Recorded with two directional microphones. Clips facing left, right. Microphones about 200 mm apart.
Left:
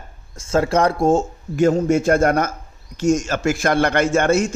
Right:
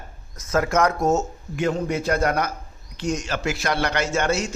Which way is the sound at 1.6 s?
45° left (ahead or behind).